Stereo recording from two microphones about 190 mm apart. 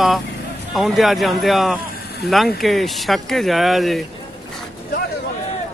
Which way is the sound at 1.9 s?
55° left (ahead or behind).